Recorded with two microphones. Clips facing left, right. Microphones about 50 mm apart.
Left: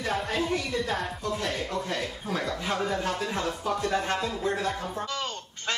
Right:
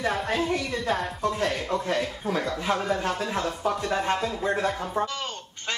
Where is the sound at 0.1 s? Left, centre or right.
Centre.